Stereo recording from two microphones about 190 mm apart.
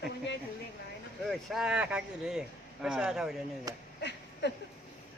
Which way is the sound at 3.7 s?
20° right (ahead or behind).